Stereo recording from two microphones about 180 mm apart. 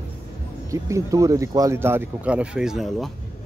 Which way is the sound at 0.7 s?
15° right (ahead or behind).